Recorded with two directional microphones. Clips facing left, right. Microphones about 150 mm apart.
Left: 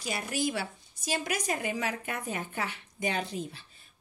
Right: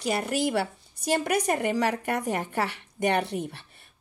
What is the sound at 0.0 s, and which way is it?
A woman's voice, 65° right (ahead or behind).